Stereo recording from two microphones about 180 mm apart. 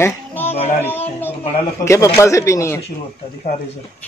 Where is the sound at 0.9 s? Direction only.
10° left (ahead or behind).